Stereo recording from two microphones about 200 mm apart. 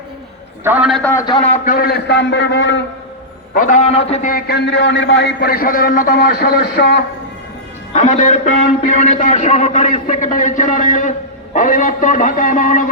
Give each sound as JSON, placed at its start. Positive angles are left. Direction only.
{"t": 0.6, "sound": "a man's voice", "side_deg": -5}
{"t": 1.1, "sound": "a man's voice", "side_deg": 20}
{"t": 1.6, "sound": "a man's voice", "side_deg": 45}
{"t": 3.5, "sound": "a man's voice", "side_deg": 40}
{"t": 7.9, "sound": "a man's voice", "side_deg": 40}